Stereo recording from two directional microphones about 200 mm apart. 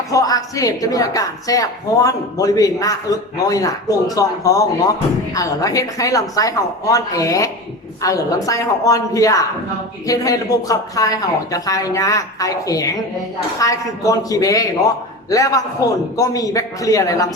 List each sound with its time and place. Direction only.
0.1 s speech: 15° left (ahead or behind)